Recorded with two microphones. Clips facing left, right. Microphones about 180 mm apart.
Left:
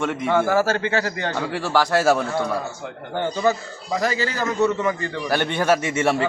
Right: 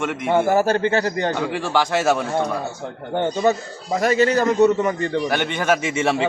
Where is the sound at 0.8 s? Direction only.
50° right (ahead or behind).